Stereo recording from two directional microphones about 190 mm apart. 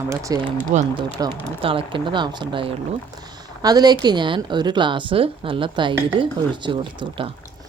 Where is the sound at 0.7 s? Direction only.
40° right (ahead or behind).